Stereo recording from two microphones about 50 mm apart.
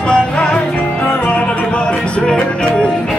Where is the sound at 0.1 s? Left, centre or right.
Centre.